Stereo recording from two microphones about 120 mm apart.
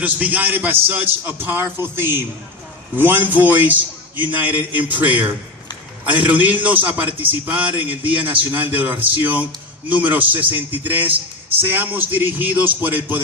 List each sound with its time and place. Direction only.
0.0 s a man's voice: 15° right (ahead or behind)